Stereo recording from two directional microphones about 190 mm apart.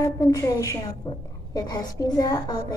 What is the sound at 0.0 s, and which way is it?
A woman's voice, 15° left (ahead or behind).